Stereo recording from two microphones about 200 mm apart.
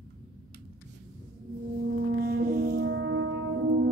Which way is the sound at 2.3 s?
55° right (ahead or behind).